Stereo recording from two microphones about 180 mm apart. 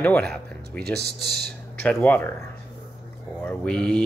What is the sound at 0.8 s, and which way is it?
Speech, 65° right (ahead or behind).